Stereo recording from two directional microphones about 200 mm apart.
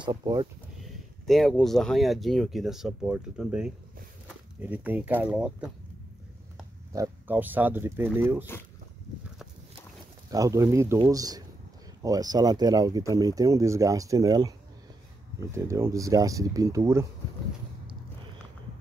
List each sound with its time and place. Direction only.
0.0 s speech: 20° right (ahead or behind)
1.2 s speech: centre (ahead or behind)
6.9 s speech: 15° right (ahead or behind)
10.3 s speech: 15° right (ahead or behind)
15.5 s speech: 15° right (ahead or behind)